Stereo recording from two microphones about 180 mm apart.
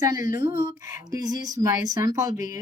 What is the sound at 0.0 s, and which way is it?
Speech, 20° right (ahead or behind).